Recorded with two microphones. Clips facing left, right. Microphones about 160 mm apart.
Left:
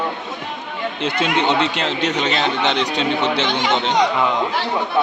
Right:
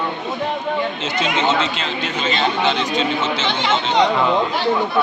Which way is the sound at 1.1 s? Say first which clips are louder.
Even; 60° left (ahead or behind).